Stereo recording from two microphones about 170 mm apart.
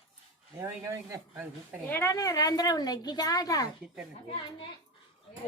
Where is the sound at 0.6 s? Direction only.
15° right (ahead or behind).